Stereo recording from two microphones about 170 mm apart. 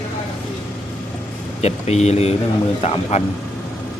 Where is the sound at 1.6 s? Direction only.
40° left (ahead or behind).